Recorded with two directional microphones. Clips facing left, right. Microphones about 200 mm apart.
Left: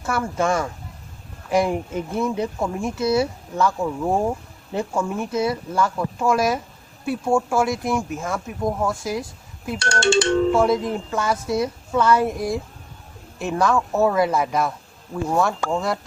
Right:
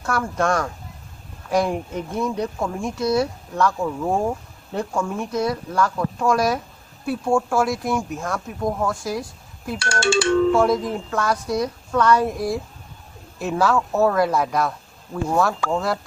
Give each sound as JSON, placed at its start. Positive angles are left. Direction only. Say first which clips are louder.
{"t": 0.0, "sound": "speech", "louder": "even", "side_deg": 5}
{"t": 9.8, "sound": "speech", "louder": "left 1 dB", "side_deg": 20}
{"t": 10.5, "sound": "speech", "louder": "even", "side_deg": 0}